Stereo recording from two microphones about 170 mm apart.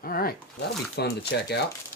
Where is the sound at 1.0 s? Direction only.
75° left (ahead or behind).